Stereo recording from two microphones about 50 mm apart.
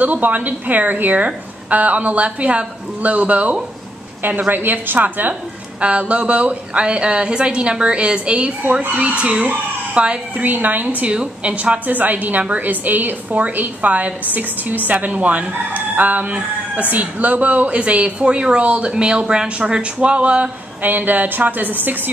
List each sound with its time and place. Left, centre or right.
0.0 s a woman's voice: right
10.4 s a woman's voice: right
11.0 s a woman's voice: right
20.8 s a woman's voice: right